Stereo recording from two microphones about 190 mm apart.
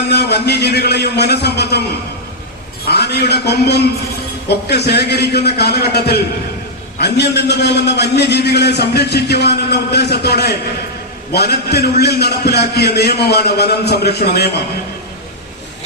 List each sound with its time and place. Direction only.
0.1 s a man's voice: 60° left (ahead or behind)
2.8 s a man's voice: 60° left (ahead or behind)